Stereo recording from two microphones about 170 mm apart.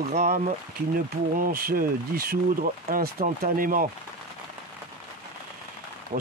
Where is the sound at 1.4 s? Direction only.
60° right (ahead or behind).